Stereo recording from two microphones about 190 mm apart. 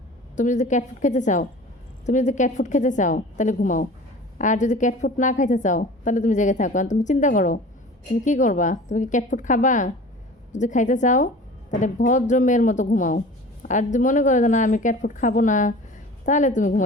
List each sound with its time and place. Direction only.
0.3 s speech: 40° left (ahead or behind)